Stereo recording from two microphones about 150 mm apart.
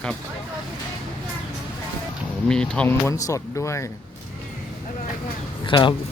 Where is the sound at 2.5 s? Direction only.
5° left (ahead or behind).